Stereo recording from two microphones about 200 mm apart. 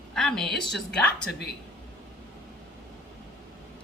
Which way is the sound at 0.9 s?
55° left (ahead or behind).